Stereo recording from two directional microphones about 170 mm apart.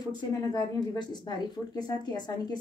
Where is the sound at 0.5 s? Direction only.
25° left (ahead or behind).